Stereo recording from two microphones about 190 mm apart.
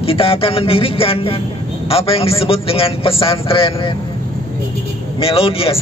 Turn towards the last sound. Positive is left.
turn(degrees=30)  # may be behind; listen again after turning